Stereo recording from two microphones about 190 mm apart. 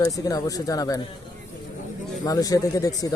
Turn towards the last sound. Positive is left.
turn(degrees=20)  # may be behind; listen again after turning